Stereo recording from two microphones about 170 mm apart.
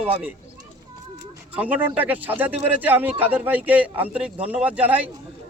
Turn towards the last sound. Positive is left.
turn(degrees=-5)  # may be behind; listen again after turning